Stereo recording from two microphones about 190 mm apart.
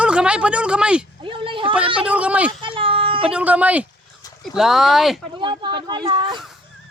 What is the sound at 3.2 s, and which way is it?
Speech, 5° right (ahead or behind).